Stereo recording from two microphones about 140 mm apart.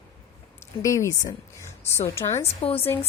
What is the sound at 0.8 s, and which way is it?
A woman's voice, 25° left (ahead or behind).